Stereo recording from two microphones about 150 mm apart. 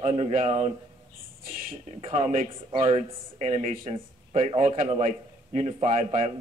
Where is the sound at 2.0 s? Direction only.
50° right (ahead or behind).